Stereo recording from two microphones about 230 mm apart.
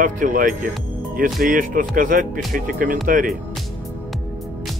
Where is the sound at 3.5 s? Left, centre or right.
Centre.